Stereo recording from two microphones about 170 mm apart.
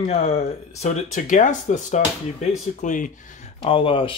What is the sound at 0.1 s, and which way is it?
Speech, 40° left (ahead or behind).